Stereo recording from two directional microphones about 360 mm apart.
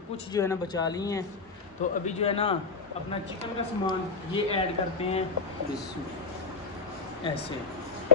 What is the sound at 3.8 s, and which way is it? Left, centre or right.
Speech, centre.